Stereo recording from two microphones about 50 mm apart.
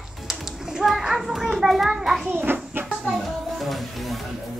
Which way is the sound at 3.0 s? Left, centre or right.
Centre.